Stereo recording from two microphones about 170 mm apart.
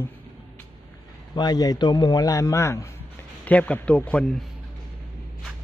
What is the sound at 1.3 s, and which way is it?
Speech, 25° left (ahead or behind).